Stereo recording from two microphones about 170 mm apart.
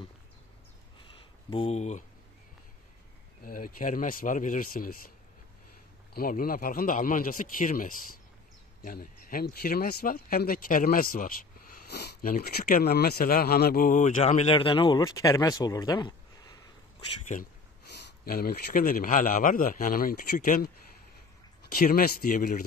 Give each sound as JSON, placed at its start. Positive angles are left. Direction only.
{"t": 1.5, "sound": "speech", "side_deg": 35}
{"t": 3.4, "sound": "speech", "side_deg": 55}
{"t": 6.1, "sound": "speech", "side_deg": 60}
{"t": 11.9, "sound": "speech", "side_deg": 70}
{"t": 15.0, "sound": "speech", "side_deg": 20}
{"t": 18.2, "sound": "speech", "side_deg": 65}